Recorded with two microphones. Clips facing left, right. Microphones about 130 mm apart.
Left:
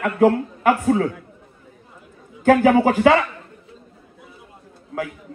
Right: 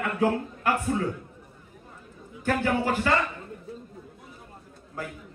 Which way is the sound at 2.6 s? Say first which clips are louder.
Left 10 dB; 90° left.